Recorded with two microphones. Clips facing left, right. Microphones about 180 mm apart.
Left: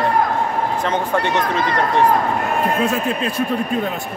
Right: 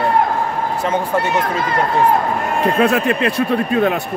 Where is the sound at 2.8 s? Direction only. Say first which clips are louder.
Right 4 dB; 70° right (ahead or behind).